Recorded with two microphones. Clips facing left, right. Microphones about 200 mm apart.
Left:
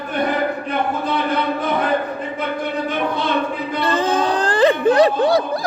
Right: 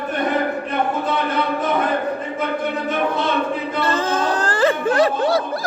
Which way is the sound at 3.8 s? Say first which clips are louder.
Left 3 dB; 15° left (ahead or behind).